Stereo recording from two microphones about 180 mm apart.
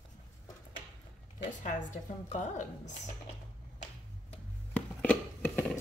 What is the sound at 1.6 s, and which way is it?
A woman's voice, 45° left (ahead or behind).